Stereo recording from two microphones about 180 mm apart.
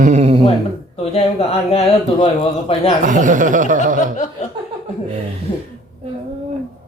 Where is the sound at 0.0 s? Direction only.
40° right (ahead or behind).